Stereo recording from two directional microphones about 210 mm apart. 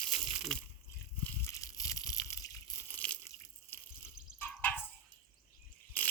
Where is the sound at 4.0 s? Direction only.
5° right (ahead or behind).